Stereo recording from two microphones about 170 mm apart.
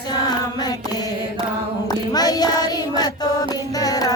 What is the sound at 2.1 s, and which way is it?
Child singing, 20° left (ahead or behind).